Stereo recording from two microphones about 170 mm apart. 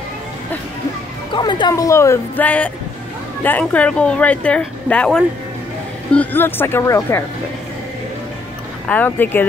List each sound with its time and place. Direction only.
1.3 s speech: 25° left (ahead or behind)
8.8 s speech: 10° left (ahead or behind)